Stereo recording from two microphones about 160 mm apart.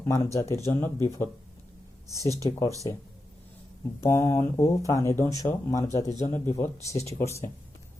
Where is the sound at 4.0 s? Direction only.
20° left (ahead or behind).